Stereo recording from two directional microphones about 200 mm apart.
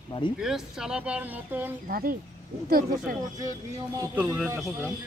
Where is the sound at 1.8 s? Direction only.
45° right (ahead or behind).